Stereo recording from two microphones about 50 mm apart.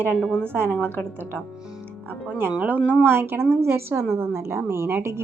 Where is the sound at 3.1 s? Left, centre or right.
Right.